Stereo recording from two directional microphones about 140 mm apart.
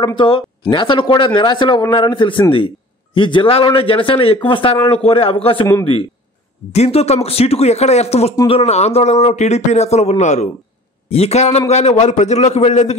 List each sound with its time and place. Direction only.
0.0 s speech: 35° left (ahead or behind)
6.7 s a man's voice: 50° left (ahead or behind)